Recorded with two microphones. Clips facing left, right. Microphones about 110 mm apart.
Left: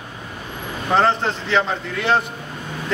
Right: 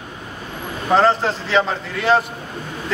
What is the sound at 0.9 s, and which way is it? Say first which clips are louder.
A man's voice: right 2 dB; centre (ahead or behind).